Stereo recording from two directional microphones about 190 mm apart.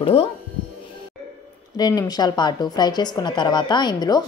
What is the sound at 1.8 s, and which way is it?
A woman's voice, 20° left (ahead or behind).